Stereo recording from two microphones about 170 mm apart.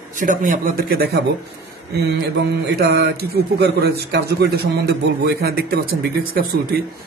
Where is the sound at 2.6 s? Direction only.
70° right (ahead or behind).